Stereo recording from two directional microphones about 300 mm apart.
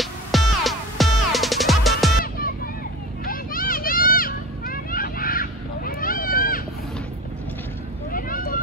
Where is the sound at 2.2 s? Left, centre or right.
Left.